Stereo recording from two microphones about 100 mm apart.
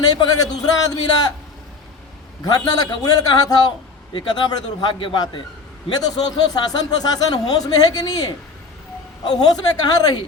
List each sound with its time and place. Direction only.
0.0 s a man's voice: 40° left (ahead or behind)
2.4 s a man's voice: 40° left (ahead or behind)
5.9 s a man's voice: 40° left (ahead or behind)